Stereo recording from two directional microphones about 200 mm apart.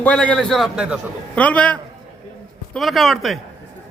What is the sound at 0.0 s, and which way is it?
Speech, 5° left (ahead or behind).